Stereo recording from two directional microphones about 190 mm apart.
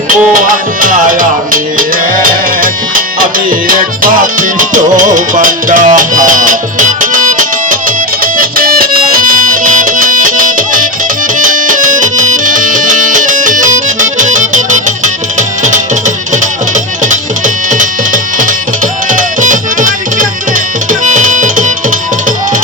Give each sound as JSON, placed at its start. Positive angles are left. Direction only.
{"t": 0.1, "sound": "music", "side_deg": -45}
{"t": 21.0, "sound": "tabla", "side_deg": -40}